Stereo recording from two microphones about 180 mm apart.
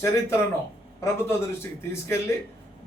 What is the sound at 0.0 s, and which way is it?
Speech, 15° left (ahead or behind).